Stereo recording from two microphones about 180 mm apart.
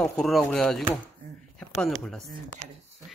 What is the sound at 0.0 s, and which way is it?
Speech, centre (ahead or behind).